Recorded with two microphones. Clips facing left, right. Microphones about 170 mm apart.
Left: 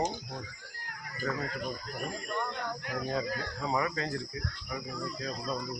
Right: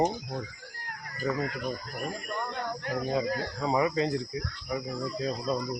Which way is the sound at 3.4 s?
25° right (ahead or behind).